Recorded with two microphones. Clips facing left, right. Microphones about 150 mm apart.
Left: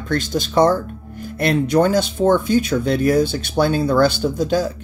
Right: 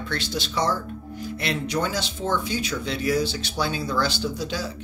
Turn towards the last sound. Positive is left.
turn(degrees=50)  # may be behind; listen again after turning